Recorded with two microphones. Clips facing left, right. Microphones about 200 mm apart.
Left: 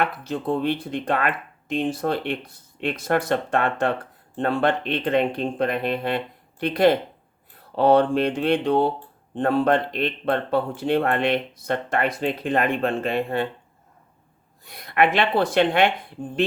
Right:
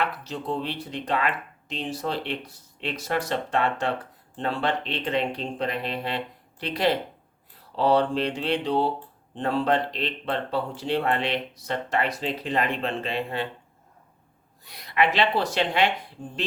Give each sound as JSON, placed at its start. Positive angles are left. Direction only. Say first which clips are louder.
{"t": 0.0, "sound": "speech", "louder": "left 4 dB", "side_deg": 50}
{"t": 14.6, "sound": "speech", "louder": "left 4 dB", "side_deg": 50}